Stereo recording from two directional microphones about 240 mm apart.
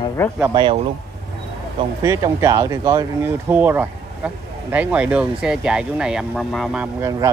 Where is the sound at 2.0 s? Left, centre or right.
Centre.